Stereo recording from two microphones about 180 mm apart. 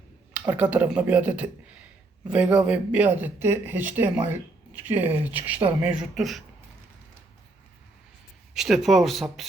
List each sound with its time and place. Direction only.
0.3 s speech: 10° right (ahead or behind)
8.5 s speech: centre (ahead or behind)